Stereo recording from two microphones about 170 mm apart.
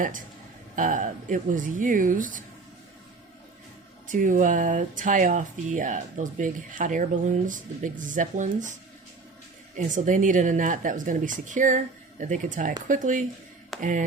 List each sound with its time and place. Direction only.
0.8 s speech: 50° right (ahead or behind)
4.1 s speech: 50° right (ahead or behind)
9.7 s speech: 50° right (ahead or behind)
13.7 s a sound: centre (ahead or behind)